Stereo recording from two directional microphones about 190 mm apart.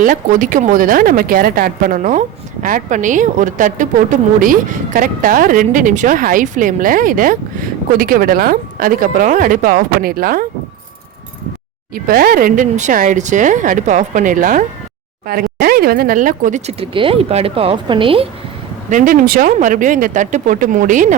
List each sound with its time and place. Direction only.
0.0 s speech: 45° right (ahead or behind)
12.0 s speech: 50° right (ahead or behind); by 18.3 s 30° right (ahead or behind)
18.9 s speech: 45° right (ahead or behind)